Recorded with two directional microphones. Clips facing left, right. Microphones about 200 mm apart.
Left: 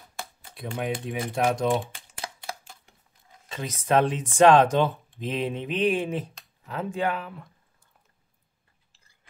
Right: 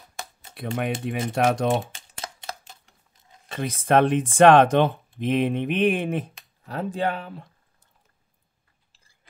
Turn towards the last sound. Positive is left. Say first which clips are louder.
# right 1 dB
turn(degrees=-30)  # may be behind; listen again after turning